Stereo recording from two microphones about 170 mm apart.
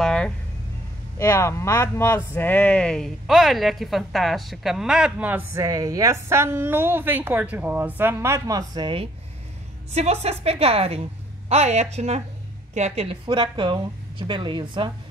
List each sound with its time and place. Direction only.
0.0 s vehicle: 5° left (ahead or behind)
1.1 s speech: 15° left (ahead or behind); by 9.1 s 30° right (ahead or behind)
10.4 s a woman's voice: 35° right (ahead or behind)